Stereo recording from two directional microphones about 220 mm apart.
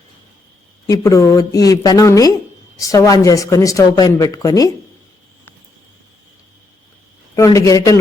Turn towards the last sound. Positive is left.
turn(degrees=15)  # may be behind; listen again after turning